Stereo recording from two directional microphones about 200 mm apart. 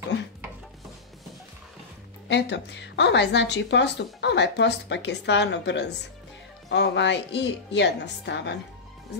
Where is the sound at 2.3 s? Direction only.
60° left (ahead or behind).